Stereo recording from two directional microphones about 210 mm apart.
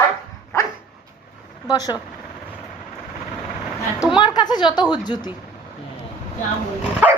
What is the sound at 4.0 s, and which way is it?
A woman's voice, 20° left (ahead or behind).